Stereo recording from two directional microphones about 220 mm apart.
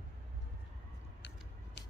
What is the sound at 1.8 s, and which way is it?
Music, 50° left (ahead or behind).